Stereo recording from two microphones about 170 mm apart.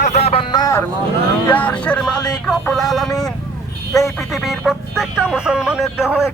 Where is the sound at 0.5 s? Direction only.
20° left (ahead or behind).